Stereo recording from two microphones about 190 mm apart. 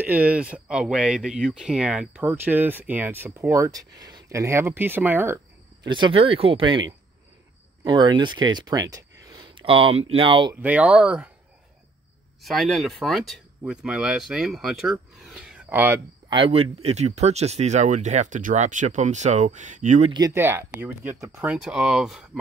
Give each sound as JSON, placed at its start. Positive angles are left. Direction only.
{"t": 0.0, "sound": "speech", "side_deg": -10}
{"t": 5.9, "sound": "speech", "side_deg": -25}
{"t": 7.8, "sound": "speech", "side_deg": -20}
{"t": 10.5, "sound": "speech", "side_deg": -10}
{"t": 12.4, "sound": "speech", "side_deg": 0}
{"t": 16.3, "sound": "speech", "side_deg": -30}
{"t": 20.1, "sound": "speech", "side_deg": -20}